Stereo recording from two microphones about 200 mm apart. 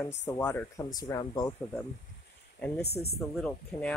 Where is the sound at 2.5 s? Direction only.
5° left (ahead or behind).